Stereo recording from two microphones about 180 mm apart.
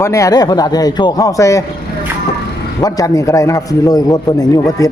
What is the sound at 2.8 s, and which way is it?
A man's voice, 20° left (ahead or behind).